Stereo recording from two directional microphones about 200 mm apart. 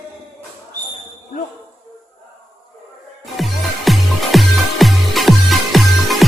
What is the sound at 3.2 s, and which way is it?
Music, centre (ahead or behind).